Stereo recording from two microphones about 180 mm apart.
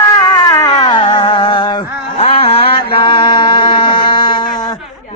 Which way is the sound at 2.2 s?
30° left (ahead or behind).